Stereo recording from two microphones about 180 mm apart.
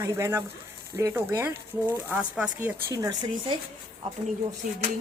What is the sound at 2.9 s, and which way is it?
Speech, 20° right (ahead or behind).